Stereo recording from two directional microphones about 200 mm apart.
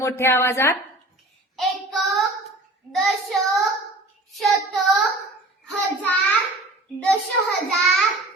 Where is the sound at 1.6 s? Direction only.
Centre (ahead or behind).